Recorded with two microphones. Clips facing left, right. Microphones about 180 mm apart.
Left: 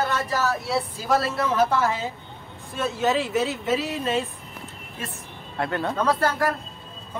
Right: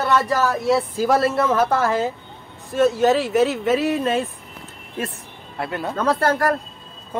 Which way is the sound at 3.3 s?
60° right (ahead or behind).